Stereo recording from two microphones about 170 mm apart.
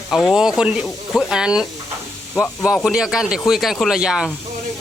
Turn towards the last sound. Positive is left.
turn(degrees=-5)  # may be behind; listen again after turning